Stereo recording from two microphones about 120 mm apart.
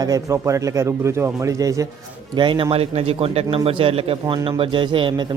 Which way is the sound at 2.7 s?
55° right (ahead or behind).